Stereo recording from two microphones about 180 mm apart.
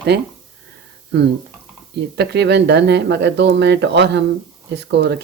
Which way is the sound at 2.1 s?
70° right (ahead or behind).